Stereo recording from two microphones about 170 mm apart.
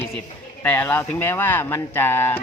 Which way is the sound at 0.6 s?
10° left (ahead or behind).